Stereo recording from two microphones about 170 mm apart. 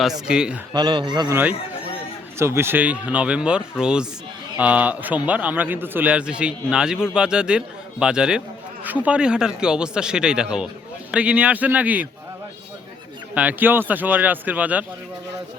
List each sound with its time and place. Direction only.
0.3 s a man's voice: 5° right (ahead or behind)
0.7 s a man's voice: 25° right (ahead or behind)
2.4 s a man's voice: 15° right (ahead or behind)
13.3 s a man's voice: 10° right (ahead or behind)